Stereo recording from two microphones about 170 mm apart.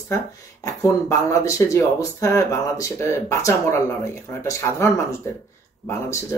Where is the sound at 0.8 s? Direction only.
20° left (ahead or behind).